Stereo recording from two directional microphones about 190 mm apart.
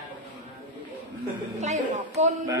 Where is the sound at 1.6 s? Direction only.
40° right (ahead or behind).